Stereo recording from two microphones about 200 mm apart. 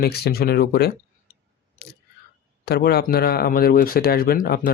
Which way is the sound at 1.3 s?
45° left (ahead or behind).